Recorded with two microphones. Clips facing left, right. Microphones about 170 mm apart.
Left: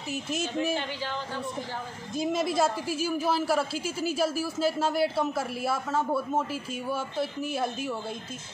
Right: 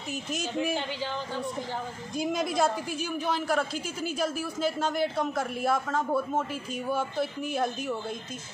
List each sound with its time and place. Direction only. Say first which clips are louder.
0.1 s a woman's voice: left 1 dB; centre (ahead or behind)
0.7 s speech: even; 15° right (ahead or behind)
2.1 s a woman's voice: left 1 dB; centre (ahead or behind)